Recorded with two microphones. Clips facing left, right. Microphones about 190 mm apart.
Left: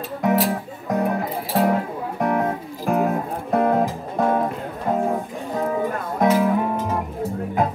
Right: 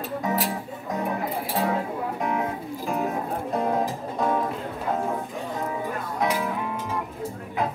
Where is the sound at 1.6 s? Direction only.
65° left (ahead or behind).